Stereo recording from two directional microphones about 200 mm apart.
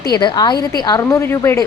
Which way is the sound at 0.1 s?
20° left (ahead or behind).